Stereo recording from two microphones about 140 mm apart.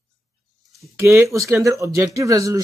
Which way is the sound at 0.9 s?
20° right (ahead or behind).